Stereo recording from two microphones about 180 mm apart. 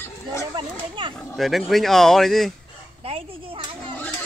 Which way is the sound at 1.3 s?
Centre (ahead or behind).